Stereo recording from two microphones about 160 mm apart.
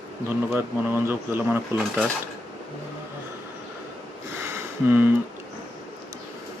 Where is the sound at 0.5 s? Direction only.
15° right (ahead or behind).